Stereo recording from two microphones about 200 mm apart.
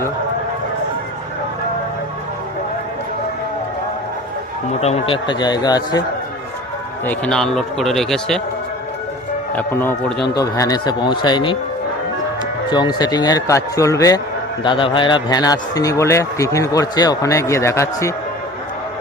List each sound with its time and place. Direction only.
4.8 s speech: 30° left (ahead or behind)
7.0 s speech: 5° left (ahead or behind)
9.6 s speech: 10° left (ahead or behind)
10.2 s speech: 55° left (ahead or behind)
10.4 s speech: 20° left (ahead or behind)
12.7 s speech: 20° left (ahead or behind)